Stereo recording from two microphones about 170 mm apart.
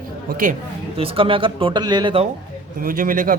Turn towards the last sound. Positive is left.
turn(degrees=-55)  # may be behind; listen again after turning